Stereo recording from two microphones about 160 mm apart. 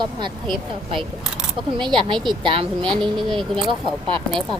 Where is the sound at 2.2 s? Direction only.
30° right (ahead or behind).